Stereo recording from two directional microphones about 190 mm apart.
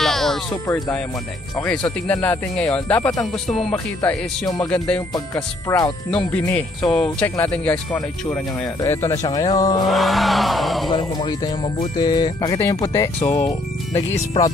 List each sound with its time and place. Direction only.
0.0 s music: centre (ahead or behind)
0.7 s speech: 15° left (ahead or behind)
2.0 s speech: 5° left (ahead or behind)
3.4 s music: 5° left (ahead or behind)
5.3 s speech: 15° left (ahead or behind)
6.1 s speech: 5° left (ahead or behind)
9.8 s music: centre (ahead or behind)
10.9 s speech: 25° left (ahead or behind)